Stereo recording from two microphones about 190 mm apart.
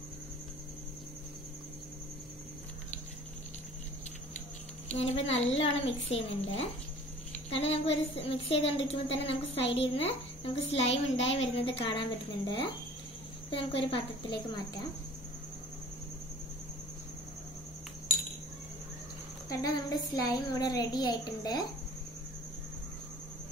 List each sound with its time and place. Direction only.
4.8 s a woman's voice: 35° left (ahead or behind)
10.8 s a woman's voice: 75° left (ahead or behind)
11.3 s a woman's voice: 30° left (ahead or behind)
13.6 s a child's voice: 30° left (ahead or behind)
19.5 s a child's voice: 20° left (ahead or behind)